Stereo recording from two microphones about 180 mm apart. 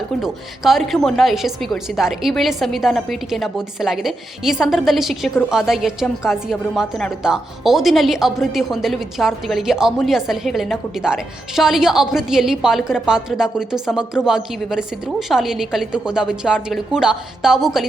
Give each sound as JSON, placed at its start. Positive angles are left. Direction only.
{"t": 0.2, "sound": "a woman's voice", "side_deg": 0}